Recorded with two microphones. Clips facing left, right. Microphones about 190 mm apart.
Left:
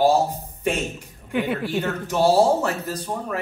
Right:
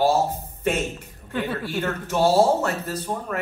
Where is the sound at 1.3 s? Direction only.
15° left (ahead or behind).